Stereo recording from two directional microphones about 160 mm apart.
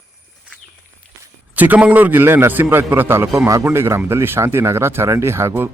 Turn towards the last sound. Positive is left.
turn(degrees=-15)  # may be behind; listen again after turning